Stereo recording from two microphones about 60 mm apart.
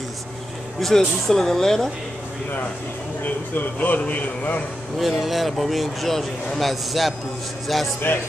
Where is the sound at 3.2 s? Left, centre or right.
Left.